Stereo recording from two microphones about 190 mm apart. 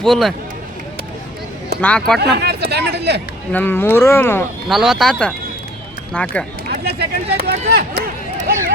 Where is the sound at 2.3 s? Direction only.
60° right (ahead or behind).